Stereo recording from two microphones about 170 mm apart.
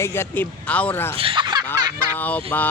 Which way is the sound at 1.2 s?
30° right (ahead or behind).